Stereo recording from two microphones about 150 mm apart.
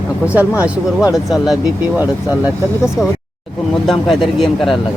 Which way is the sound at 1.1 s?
Centre (ahead or behind).